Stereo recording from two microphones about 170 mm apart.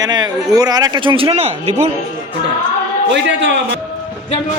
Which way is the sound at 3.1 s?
90° right.